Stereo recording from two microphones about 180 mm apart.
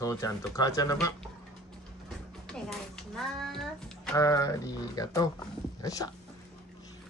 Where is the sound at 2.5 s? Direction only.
5° left (ahead or behind).